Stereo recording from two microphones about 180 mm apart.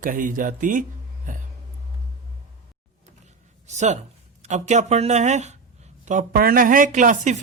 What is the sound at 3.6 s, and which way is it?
A woman's voice, 40° right (ahead or behind).